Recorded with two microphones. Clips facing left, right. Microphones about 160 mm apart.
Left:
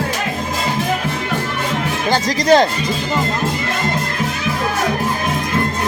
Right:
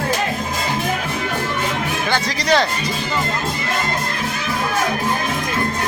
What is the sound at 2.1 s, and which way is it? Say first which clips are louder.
Speech: left 6 dB; 45° left (ahead or behind).